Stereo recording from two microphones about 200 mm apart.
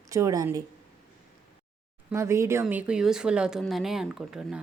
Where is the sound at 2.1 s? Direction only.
15° right (ahead or behind).